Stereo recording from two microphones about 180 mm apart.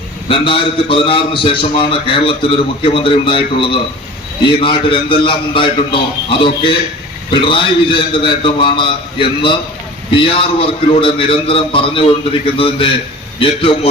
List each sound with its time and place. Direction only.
0.3 s a man's voice: 30° left (ahead or behind)